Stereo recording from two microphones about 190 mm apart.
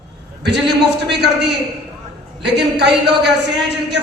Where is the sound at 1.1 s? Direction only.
65° right (ahead or behind).